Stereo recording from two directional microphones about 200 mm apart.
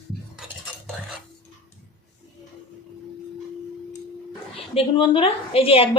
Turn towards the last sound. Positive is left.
turn(degrees=30)  # may be behind; listen again after turning